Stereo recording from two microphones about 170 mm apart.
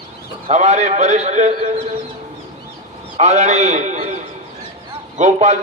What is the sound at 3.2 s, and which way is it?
A man's voice, 45° right (ahead or behind).